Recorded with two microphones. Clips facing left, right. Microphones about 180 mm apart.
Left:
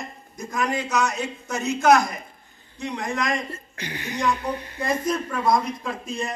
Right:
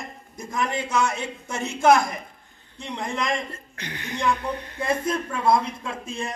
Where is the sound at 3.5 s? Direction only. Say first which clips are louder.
Left 3 dB; 5° left (ahead or behind).